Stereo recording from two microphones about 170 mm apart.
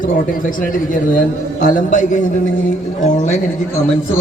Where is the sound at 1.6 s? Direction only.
50° left (ahead or behind).